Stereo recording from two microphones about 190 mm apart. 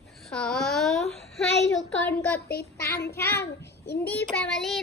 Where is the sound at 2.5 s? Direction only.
55° left (ahead or behind).